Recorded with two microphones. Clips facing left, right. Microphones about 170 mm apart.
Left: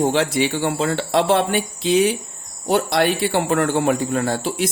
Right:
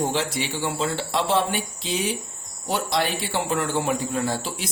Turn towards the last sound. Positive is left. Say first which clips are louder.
# left 5 dB
turn(degrees=60)  # may be behind; listen again after turning